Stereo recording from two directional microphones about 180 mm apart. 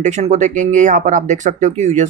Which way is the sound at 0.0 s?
40° right (ahead or behind).